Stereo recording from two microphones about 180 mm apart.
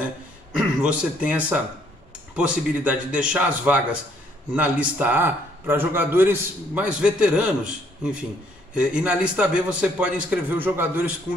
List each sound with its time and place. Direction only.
0.6 s a man's voice: 5° right (ahead or behind)